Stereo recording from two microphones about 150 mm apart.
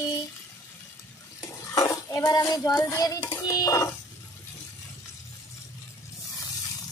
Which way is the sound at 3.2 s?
20° left (ahead or behind).